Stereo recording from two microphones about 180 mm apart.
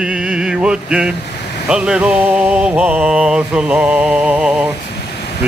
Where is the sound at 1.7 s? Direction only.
5° right (ahead or behind).